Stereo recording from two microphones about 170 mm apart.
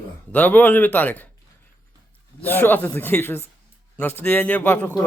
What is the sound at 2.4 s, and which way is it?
A man's voice, 10° left (ahead or behind).